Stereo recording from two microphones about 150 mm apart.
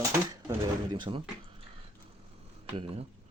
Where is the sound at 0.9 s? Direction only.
35° right (ahead or behind).